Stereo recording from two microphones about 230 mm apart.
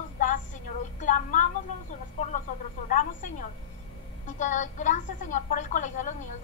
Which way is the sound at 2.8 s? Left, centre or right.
Left.